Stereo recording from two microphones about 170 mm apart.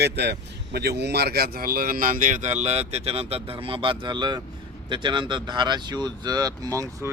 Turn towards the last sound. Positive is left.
turn(degrees=-25)  # may be behind; listen again after turning